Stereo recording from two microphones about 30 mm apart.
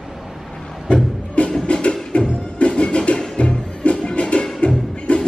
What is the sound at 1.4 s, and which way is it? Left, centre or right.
Music, left.